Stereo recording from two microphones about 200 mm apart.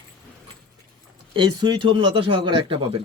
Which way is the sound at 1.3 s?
25° right (ahead or behind).